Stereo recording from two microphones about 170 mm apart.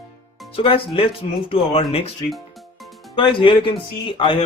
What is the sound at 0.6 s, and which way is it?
Speech, 35° left (ahead or behind).